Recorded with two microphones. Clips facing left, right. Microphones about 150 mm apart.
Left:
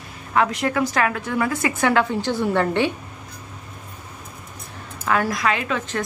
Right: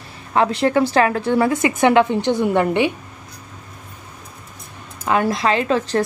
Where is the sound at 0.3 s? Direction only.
30° right (ahead or behind); by 2.9 s 15° right (ahead or behind).